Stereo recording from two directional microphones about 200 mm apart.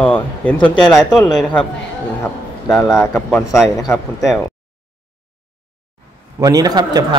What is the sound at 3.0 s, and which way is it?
Speech, 10° left (ahead or behind).